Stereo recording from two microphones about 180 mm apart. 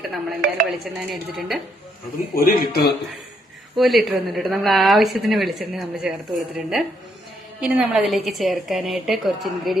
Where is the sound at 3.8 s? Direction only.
Centre (ahead or behind).